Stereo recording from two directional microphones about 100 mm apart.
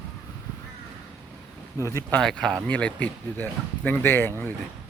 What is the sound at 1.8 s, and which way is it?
Speech, 30° left (ahead or behind).